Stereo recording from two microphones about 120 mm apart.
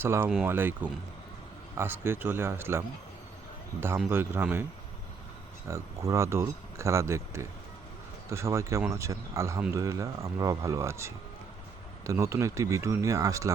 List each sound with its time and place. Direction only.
0.0 s speech: 20° right (ahead or behind)
5.6 s speech: 25° right (ahead or behind)